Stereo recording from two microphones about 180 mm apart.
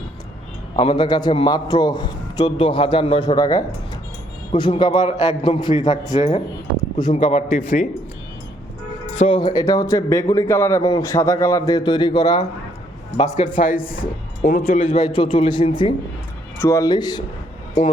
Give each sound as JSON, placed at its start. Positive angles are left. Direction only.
{"t": 0.8, "sound": "a man's voice", "side_deg": 30}
{"t": 6.3, "sound": "a sound", "side_deg": 30}
{"t": 7.1, "sound": "a man's voice", "side_deg": 35}
{"t": 9.1, "sound": "speech", "side_deg": 40}
{"t": 9.4, "sound": "a man's voice", "side_deg": 20}
{"t": 13.1, "sound": "speech", "side_deg": 40}
{"t": 14.9, "sound": "a man's voice", "side_deg": 25}